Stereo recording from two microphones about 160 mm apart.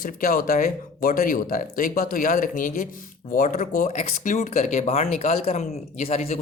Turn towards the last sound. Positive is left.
turn(degrees=45)  # may be behind; listen again after turning